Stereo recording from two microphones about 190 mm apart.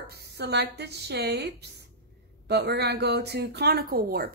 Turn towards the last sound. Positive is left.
turn(degrees=-50)  # may be behind; listen again after turning